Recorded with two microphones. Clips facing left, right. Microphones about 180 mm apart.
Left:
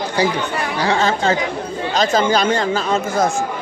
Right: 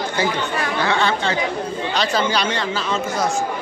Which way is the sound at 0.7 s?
40° left (ahead or behind).